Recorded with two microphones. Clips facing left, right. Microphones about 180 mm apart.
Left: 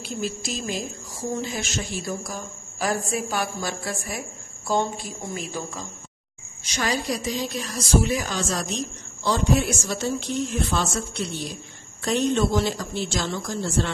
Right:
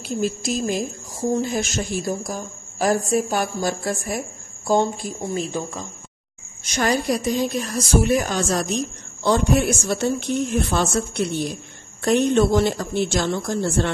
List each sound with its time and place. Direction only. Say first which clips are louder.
0.0 s speech: right 6 dB; 45° right (ahead or behind)
6.6 s a woman's voice: right 5 dB; 50° right (ahead or behind)